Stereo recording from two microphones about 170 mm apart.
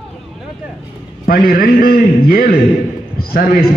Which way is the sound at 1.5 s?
60° left (ahead or behind).